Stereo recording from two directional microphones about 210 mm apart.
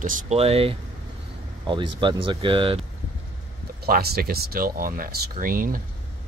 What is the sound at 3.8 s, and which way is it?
Speech, 45° right (ahead or behind).